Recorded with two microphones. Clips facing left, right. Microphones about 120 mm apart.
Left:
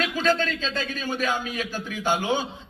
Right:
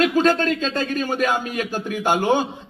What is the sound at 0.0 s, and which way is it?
Speech, 50° right (ahead or behind).